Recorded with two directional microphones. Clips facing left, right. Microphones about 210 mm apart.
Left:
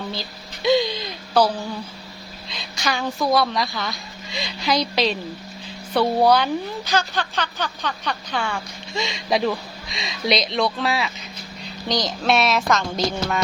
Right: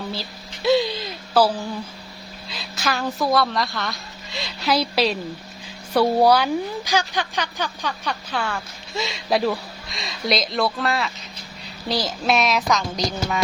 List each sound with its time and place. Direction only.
0.1 s a woman's voice: 5° right (ahead or behind)